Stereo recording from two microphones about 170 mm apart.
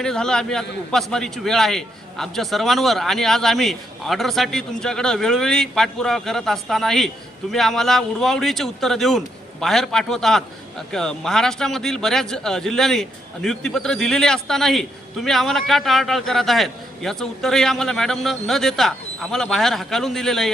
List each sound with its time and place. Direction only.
0.0 s speech: 5° left (ahead or behind)